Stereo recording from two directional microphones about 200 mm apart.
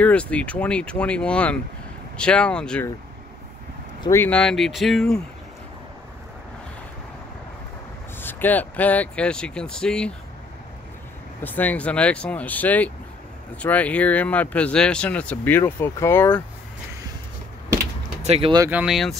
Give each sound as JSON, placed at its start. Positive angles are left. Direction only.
{"t": 0.0, "sound": "speech", "side_deg": 5}
{"t": 4.0, "sound": "speech", "side_deg": 10}
{"t": 8.2, "sound": "speech", "side_deg": 10}
{"t": 11.4, "sound": "speech", "side_deg": 10}
{"t": 18.2, "sound": "speech", "side_deg": -30}
{"t": 18.7, "sound": "speech", "side_deg": -5}